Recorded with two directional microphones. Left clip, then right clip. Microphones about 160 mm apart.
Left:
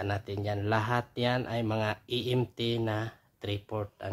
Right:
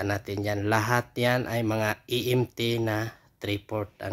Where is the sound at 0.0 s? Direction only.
20° right (ahead or behind).